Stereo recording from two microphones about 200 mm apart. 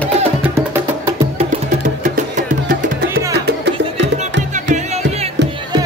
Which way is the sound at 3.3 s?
60° right (ahead or behind).